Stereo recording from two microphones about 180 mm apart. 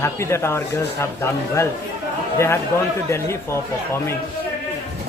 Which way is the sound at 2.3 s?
15° left (ahead or behind).